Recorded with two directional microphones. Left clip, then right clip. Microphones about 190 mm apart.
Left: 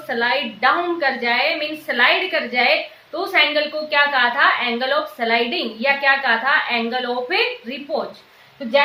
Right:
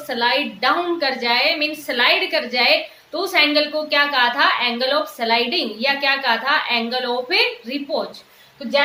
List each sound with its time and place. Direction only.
0.1 s a woman's voice: 20° right (ahead or behind)